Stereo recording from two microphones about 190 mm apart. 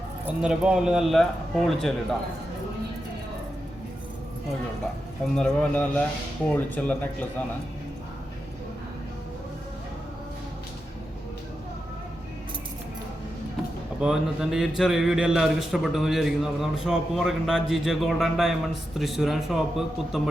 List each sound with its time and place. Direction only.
0.3 s a man's voice: 5° right (ahead or behind)
5.2 s a man's voice: 5° left (ahead or behind)
14.0 s a man's voice: 5° right (ahead or behind)